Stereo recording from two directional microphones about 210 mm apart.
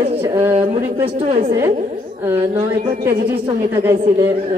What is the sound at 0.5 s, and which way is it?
A woman's voice, 30° right (ahead or behind).